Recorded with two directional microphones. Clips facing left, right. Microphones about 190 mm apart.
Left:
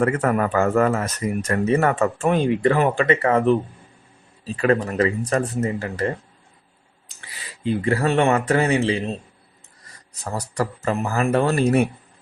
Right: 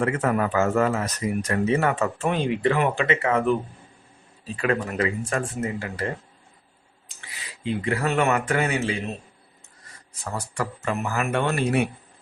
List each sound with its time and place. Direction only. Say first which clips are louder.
0.0 s speech: left 3 dB; 55° left (ahead or behind)
4.6 s speech: left 5 dB; 40° left (ahead or behind)
7.6 s speech: left 4 dB; 40° left (ahead or behind)
10.3 s speech: left 4 dB; 40° left (ahead or behind)